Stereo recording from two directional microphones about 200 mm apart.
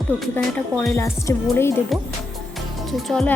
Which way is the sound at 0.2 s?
10° left (ahead or behind).